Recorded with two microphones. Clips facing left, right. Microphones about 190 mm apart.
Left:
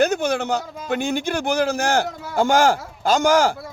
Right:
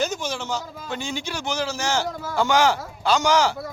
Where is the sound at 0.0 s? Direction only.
60° left (ahead or behind).